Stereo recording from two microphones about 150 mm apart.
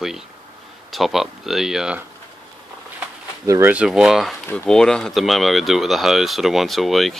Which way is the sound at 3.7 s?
5° right (ahead or behind).